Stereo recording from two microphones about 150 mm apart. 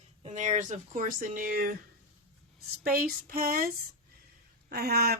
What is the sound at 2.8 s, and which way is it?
Female singing, 80° right.